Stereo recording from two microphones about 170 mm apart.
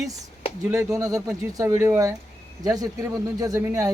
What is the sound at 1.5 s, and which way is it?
Speech, 20° right (ahead or behind).